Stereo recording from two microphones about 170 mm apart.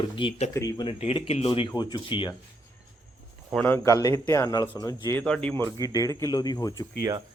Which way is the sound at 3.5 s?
10° left (ahead or behind).